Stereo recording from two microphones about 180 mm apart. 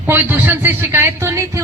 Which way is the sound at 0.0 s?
10° right (ahead or behind).